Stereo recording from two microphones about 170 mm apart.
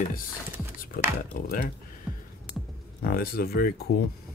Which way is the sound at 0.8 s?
55° left (ahead or behind).